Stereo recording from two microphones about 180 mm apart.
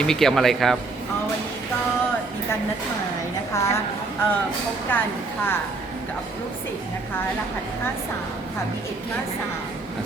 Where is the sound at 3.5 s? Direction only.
15° left (ahead or behind).